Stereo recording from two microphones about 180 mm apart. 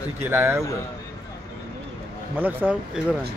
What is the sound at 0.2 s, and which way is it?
Speech, 15° right (ahead or behind).